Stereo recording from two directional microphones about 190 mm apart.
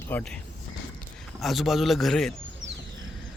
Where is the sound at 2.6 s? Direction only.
75° right (ahead or behind).